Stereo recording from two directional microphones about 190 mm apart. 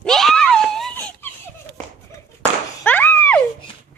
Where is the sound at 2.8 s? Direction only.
10° left (ahead or behind).